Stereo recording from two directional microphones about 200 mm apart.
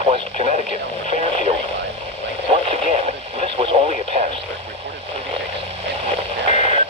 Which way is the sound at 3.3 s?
25° right (ahead or behind).